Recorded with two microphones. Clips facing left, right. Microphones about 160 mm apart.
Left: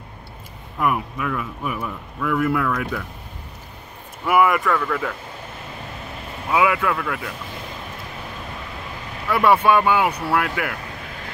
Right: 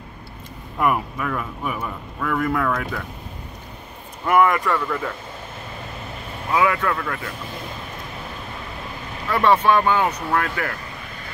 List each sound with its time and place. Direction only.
0.7 s a man's voice: centre (ahead or behind)
4.3 s a man's voice: 5° left (ahead or behind)
6.5 s speech: 10° left (ahead or behind)
9.3 s speech: 10° left (ahead or behind)